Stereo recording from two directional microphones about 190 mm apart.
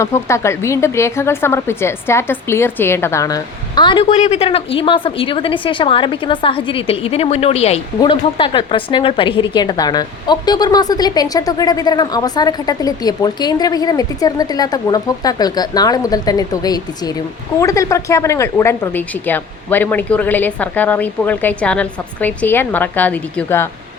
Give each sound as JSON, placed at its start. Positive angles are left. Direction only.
{"t": 0.0, "sound": "a woman's voice", "side_deg": 15}